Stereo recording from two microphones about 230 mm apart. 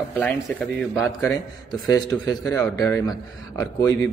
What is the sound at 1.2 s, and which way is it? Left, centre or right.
A man's voice, centre.